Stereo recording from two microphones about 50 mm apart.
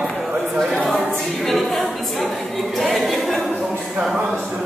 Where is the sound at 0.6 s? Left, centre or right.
Centre.